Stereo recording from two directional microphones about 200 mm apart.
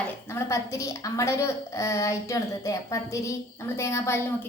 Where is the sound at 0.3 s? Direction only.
15° left (ahead or behind).